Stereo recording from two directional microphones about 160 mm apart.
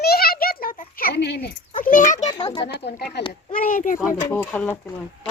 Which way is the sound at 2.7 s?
85° left.